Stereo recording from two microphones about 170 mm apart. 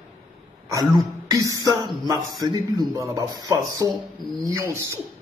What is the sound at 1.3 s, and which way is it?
A man's voice, 20° right (ahead or behind).